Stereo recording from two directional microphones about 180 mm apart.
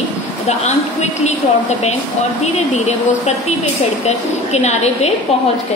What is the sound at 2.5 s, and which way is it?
A woman's voice, 40° left (ahead or behind).